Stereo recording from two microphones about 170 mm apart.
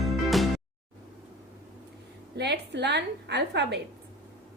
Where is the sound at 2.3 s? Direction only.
85° right.